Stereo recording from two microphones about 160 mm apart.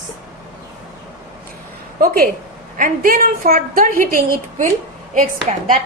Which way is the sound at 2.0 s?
65° right (ahead or behind).